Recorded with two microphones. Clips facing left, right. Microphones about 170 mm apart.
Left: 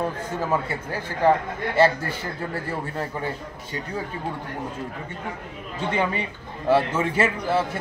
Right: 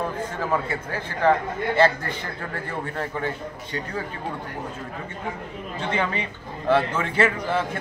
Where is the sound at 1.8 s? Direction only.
10° left (ahead or behind).